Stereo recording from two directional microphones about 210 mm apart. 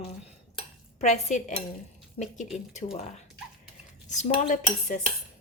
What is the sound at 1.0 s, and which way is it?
Speech, 35° left (ahead or behind).